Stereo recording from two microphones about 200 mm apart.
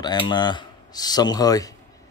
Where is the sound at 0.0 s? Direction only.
20° left (ahead or behind).